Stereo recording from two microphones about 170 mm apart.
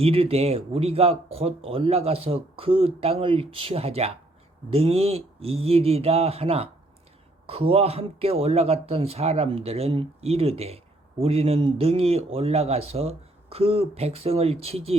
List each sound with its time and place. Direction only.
0.0 s speech: 35° right (ahead or behind)